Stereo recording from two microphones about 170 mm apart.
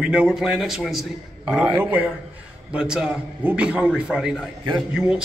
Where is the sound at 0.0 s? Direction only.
5° right (ahead or behind).